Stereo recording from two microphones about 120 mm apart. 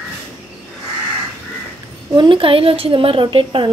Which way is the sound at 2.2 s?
45° right (ahead or behind).